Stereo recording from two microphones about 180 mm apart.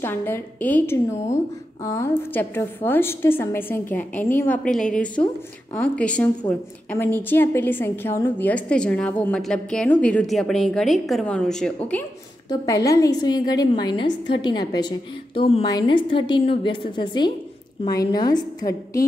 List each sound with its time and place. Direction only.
0.0 s a woman's voice: 10° left (ahead or behind)
12.4 s a woman's voice: 20° left (ahead or behind)